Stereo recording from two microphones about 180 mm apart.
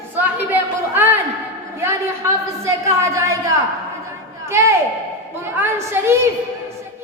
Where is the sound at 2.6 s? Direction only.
15° right (ahead or behind).